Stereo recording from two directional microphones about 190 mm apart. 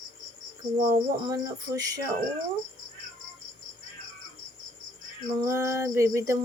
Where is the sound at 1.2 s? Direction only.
20° right (ahead or behind).